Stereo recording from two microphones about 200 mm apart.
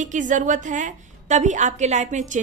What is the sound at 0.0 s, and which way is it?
A woman's voice, 40° right (ahead or behind).